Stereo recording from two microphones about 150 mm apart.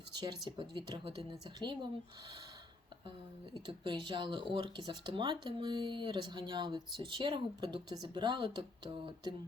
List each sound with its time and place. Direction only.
0.5 s speech: 30° right (ahead or behind)
3.7 s a woman's voice: 30° right (ahead or behind)